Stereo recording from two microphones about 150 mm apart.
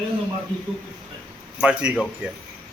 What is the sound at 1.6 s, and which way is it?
Speech, 5° right (ahead or behind).